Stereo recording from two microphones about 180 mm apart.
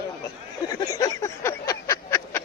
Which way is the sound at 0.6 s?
20° left (ahead or behind).